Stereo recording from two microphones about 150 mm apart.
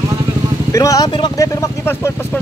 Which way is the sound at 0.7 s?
20° left (ahead or behind).